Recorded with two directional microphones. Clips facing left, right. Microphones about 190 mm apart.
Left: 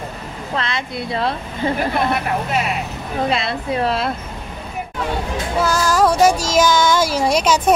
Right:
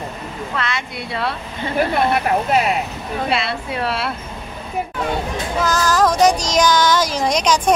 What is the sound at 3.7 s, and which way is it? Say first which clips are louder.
Speech: left 5 dB; 40° left (ahead or behind).